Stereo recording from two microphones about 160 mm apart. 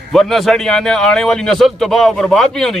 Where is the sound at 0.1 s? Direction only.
Centre (ahead or behind).